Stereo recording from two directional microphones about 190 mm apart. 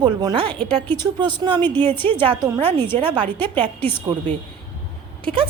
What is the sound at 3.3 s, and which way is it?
Speech, 10° left (ahead or behind).